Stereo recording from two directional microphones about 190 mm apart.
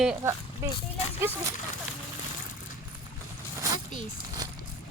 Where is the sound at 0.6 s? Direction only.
15° right (ahead or behind).